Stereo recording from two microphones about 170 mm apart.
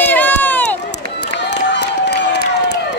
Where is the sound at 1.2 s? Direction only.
85° left.